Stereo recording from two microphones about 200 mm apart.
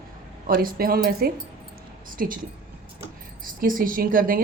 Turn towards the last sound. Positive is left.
turn(degrees=-45)  # may be behind; listen again after turning